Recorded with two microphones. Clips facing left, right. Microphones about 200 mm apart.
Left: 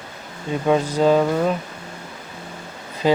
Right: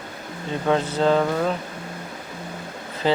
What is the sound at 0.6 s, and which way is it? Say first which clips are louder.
Speech: left 3 dB; 10° left (ahead or behind).